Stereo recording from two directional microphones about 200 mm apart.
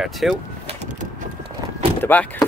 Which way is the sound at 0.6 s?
30° right (ahead or behind).